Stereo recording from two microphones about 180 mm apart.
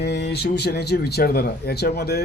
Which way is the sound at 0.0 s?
70° left (ahead or behind).